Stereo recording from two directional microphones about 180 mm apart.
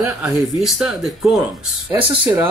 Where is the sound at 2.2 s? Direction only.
10° right (ahead or behind).